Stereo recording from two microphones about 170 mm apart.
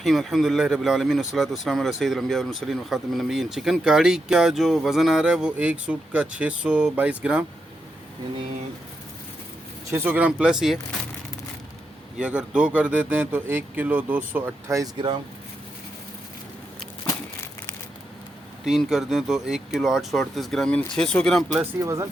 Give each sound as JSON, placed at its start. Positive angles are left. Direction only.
{"t": 0.0, "sound": "speech", "side_deg": 0}
{"t": 9.9, "sound": "speech", "side_deg": -10}
{"t": 12.2, "sound": "speech", "side_deg": -5}
{"t": 14.9, "sound": "speech", "side_deg": -30}
{"t": 18.6, "sound": "speech", "side_deg": 0}
{"t": 21.6, "sound": "speech", "side_deg": -20}